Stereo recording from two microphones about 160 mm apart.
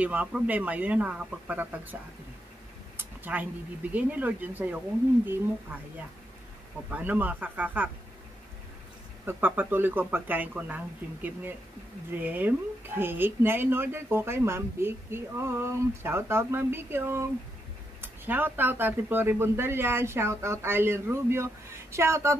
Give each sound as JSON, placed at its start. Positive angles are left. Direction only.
{"t": 0.0, "sound": "speech", "side_deg": -10}
{"t": 3.0, "sound": "speech", "side_deg": -10}
{"t": 6.9, "sound": "speech", "side_deg": -10}
{"t": 9.2, "sound": "speech", "side_deg": -15}
{"t": 12.2, "sound": "speech", "side_deg": -10}